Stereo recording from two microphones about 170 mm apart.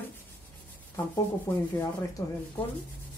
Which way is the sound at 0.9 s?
15° left (ahead or behind).